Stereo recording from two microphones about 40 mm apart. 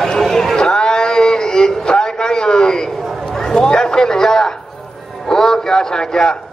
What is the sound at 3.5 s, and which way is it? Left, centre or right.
A man's voice, centre.